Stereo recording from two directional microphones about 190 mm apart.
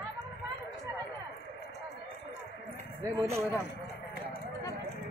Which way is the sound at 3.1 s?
15° right (ahead or behind).